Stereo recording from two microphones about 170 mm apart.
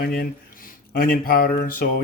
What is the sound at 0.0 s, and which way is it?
Speech, 60° left (ahead or behind).